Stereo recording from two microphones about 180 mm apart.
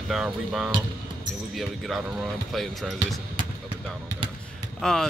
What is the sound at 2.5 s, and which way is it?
Speech, centre (ahead or behind).